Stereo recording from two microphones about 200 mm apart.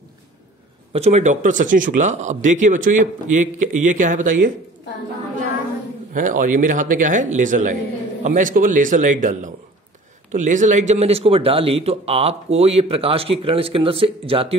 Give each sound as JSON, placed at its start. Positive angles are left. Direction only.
{"t": 0.9, "sound": "speech", "side_deg": -35}
{"t": 6.1, "sound": "speech", "side_deg": -40}